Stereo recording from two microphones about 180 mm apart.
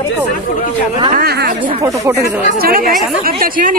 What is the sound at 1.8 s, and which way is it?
Speech, 15° right (ahead or behind).